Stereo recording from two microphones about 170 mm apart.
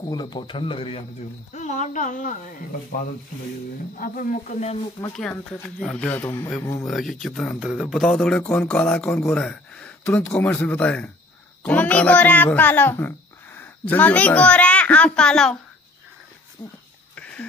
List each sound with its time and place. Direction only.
0.0 s speech: 25° left (ahead or behind)
1.5 s speech: 45° left (ahead or behind)
4.0 s speech: 55° left (ahead or behind)
5.1 s speech: 5° left (ahead or behind)
6.9 s a child's voice: centre (ahead or behind)
17.1 s a sound: 5° left (ahead or behind)